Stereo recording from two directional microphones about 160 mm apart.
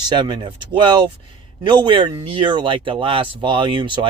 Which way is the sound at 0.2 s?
30° right (ahead or behind).